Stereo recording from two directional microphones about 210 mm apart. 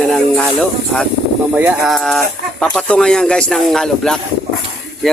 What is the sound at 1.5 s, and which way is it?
Speech, 5° right (ahead or behind).